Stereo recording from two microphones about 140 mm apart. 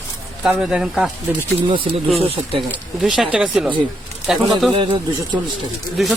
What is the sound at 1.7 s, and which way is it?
Speech, 40° right (ahead or behind).